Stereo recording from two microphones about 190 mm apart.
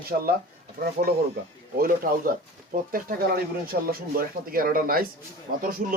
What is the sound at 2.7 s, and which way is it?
Speech, 50° right (ahead or behind).